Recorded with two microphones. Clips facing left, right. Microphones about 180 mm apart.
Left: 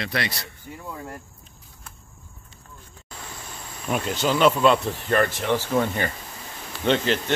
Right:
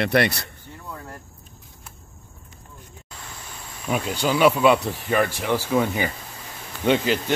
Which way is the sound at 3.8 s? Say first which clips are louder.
Even; centre (ahead or behind).